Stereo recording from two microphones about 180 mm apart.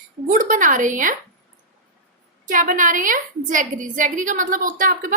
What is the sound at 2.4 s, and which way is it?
A woman's voice, 50° right (ahead or behind).